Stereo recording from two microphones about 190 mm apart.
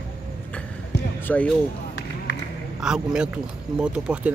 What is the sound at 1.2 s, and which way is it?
Speech, 5° left (ahead or behind).